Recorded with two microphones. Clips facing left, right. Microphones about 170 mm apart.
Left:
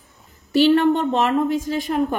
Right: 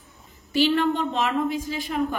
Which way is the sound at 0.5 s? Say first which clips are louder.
Left 6 dB; 45° left (ahead or behind).